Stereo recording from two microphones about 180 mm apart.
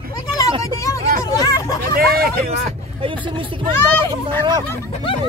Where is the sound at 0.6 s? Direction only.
20° left (ahead or behind).